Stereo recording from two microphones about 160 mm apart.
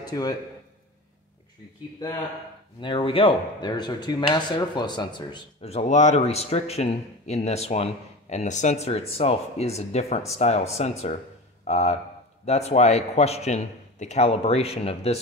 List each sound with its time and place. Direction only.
0.0 s speech: 25° left (ahead or behind)
2.8 s speech: 30° left (ahead or behind)
5.7 s a man's voice: 45° left (ahead or behind)